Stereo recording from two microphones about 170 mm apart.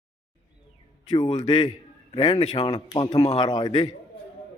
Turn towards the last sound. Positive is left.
turn(degrees=25)  # may be behind; listen again after turning